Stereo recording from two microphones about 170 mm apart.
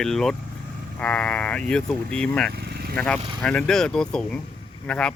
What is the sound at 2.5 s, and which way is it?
Vehicle, 75° right (ahead or behind).